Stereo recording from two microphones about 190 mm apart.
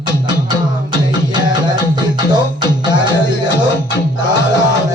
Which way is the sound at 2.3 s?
25° right (ahead or behind).